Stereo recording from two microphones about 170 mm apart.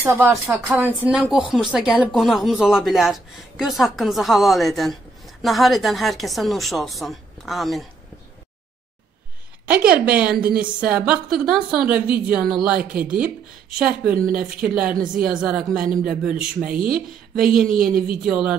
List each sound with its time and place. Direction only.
0.0 s a woman's voice: 15° right (ahead or behind)
9.7 s a woman's voice: 5° right (ahead or behind)
15.7 s speech: 55° right (ahead or behind)
16.1 s speech: 5° right (ahead or behind)